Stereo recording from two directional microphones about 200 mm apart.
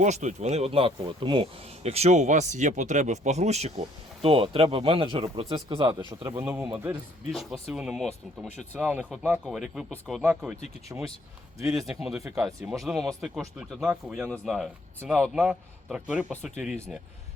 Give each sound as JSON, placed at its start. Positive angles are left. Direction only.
{"t": 0.0, "sound": "speech", "side_deg": -35}
{"t": 6.3, "sound": "a man's voice", "side_deg": -10}
{"t": 10.9, "sound": "a man's voice", "side_deg": -10}
{"t": 11.9, "sound": "a man's voice", "side_deg": 0}
{"t": 12.8, "sound": "a man's voice", "side_deg": 0}